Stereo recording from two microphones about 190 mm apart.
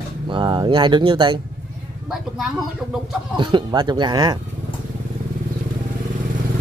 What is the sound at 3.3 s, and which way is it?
Speech, 25° right (ahead or behind).